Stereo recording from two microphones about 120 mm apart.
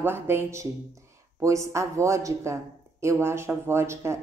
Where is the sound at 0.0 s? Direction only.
20° right (ahead or behind).